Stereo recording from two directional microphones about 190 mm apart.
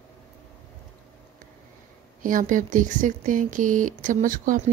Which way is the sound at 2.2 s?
45° right (ahead or behind).